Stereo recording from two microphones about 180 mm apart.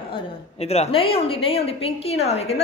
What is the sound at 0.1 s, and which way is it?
A woman's voice, 35° left (ahead or behind).